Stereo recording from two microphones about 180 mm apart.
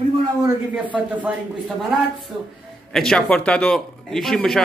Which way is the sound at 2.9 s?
5° left (ahead or behind).